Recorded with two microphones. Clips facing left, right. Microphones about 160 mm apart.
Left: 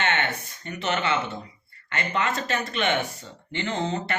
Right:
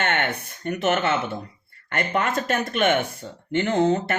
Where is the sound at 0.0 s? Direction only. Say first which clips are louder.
Right 2 dB; 55° right (ahead or behind).